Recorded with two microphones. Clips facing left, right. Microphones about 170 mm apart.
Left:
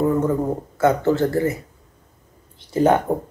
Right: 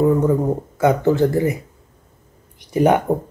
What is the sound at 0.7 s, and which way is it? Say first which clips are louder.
Speech: right 2 dB; 15° right (ahead or behind).